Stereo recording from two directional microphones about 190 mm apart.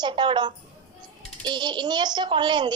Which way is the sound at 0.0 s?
25° right (ahead or behind).